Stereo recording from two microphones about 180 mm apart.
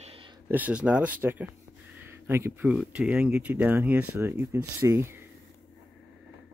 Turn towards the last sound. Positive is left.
turn(degrees=-15)  # may be behind; listen again after turning